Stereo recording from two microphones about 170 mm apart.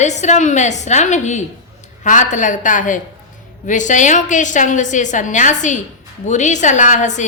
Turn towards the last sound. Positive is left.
turn(degrees=45)  # may be behind; listen again after turning